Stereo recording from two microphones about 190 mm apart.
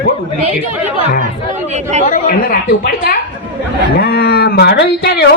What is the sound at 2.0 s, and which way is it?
A woman's voice, 45° left (ahead or behind).